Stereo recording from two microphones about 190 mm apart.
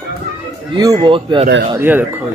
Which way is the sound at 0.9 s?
25° right (ahead or behind).